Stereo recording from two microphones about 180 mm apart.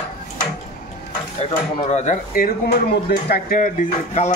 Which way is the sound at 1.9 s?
40° left (ahead or behind).